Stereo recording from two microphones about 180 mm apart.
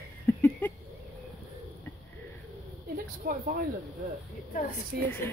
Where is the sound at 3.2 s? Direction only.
60° right (ahead or behind).